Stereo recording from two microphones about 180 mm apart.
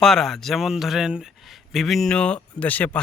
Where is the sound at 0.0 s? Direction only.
Centre (ahead or behind).